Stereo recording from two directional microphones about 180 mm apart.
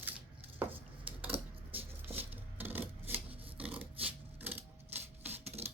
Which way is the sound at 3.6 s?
10° right (ahead or behind).